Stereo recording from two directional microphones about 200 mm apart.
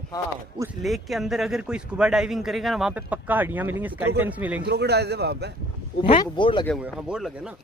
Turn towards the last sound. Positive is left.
turn(degrees=-5)  # may be behind; listen again after turning